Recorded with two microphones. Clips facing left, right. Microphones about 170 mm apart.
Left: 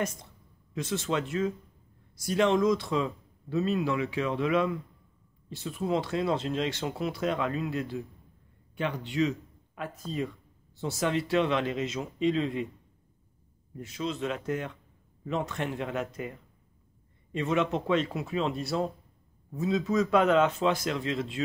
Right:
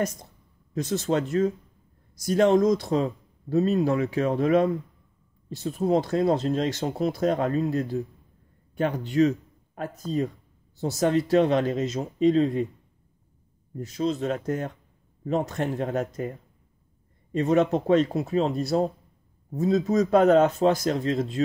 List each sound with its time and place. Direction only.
0.7 s speech: 40° right (ahead or behind)
13.7 s speech: 40° right (ahead or behind)